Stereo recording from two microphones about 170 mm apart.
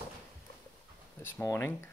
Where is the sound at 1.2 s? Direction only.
10° left (ahead or behind).